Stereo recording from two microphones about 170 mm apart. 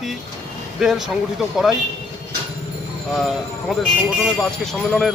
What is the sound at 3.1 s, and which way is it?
Speech, centre (ahead or behind).